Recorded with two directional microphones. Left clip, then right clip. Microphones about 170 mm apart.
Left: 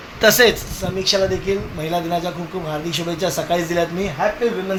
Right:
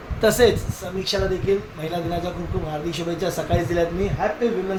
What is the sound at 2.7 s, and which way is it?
Speech, 30° left (ahead or behind).